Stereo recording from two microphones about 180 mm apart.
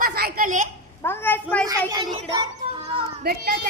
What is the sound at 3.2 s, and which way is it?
Speech, 55° right (ahead or behind).